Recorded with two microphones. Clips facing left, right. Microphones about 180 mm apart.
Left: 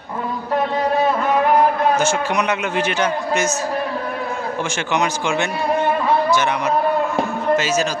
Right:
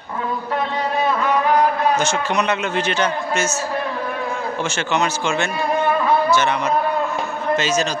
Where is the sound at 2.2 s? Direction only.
10° left (ahead or behind).